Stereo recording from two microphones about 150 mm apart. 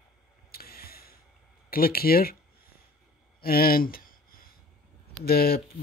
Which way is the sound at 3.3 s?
90° left.